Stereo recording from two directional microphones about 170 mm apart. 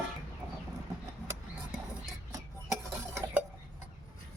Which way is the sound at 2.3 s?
20° right (ahead or behind).